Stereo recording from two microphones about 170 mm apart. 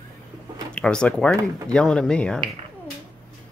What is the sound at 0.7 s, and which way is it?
Speech, 5° left (ahead or behind).